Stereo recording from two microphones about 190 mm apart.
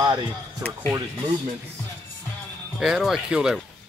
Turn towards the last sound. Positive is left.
turn(degrees=-5)  # may be behind; listen again after turning